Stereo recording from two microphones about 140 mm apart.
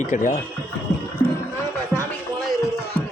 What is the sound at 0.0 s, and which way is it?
Speech, 70° left (ahead or behind).